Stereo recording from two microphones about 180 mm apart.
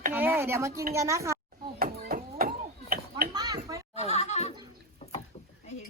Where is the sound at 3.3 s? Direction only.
20° right (ahead or behind).